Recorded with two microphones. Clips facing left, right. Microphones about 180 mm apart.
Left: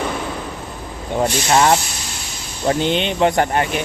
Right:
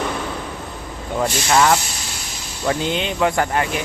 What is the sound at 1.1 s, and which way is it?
Speech, 25° left (ahead or behind).